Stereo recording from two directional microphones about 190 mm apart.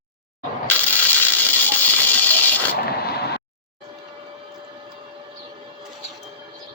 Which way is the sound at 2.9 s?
55° left (ahead or behind).